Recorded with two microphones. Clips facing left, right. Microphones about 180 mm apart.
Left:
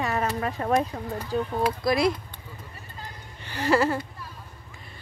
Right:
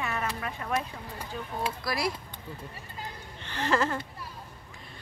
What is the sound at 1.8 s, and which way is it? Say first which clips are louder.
Speech: left 9 dB; 20° left (ahead or behind).